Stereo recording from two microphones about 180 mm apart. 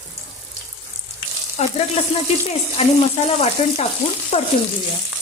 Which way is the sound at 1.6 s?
35° left (ahead or behind).